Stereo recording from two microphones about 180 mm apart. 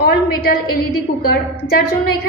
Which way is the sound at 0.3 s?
60° left (ahead or behind).